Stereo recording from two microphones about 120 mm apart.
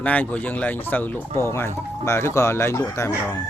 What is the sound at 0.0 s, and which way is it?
A man's voice, 15° left (ahead or behind).